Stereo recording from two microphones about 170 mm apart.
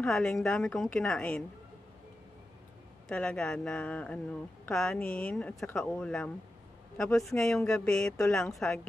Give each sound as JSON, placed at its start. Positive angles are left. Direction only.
{"t": 0.0, "sound": "speech", "side_deg": 0}
{"t": 3.1, "sound": "speech", "side_deg": 5}